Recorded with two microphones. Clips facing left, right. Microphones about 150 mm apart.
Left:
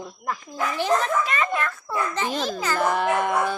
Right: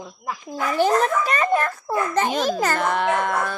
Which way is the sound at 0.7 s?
45° right (ahead or behind).